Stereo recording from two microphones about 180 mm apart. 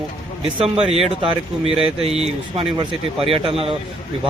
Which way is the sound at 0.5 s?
30° right (ahead or behind).